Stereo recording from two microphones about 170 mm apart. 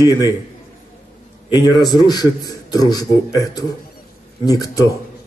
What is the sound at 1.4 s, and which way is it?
A man's voice, 25° left (ahead or behind).